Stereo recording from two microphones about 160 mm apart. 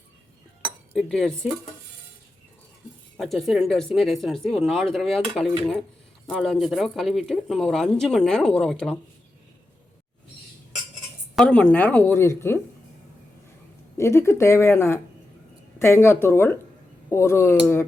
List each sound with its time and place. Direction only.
0.9 s speech: centre (ahead or behind)
3.2 s speech: centre (ahead or behind)
11.3 s speech: 10° left (ahead or behind)
13.9 s speech: 15° left (ahead or behind)